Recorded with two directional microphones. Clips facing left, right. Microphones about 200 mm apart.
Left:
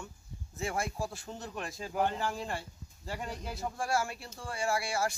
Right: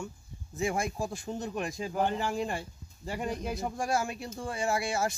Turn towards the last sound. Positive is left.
turn(degrees=-20)  # may be behind; listen again after turning